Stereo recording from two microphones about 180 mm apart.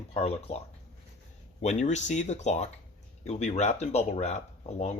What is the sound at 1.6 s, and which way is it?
Speech, 40° left (ahead or behind).